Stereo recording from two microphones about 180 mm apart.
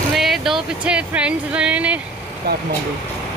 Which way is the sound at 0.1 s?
Centre (ahead or behind).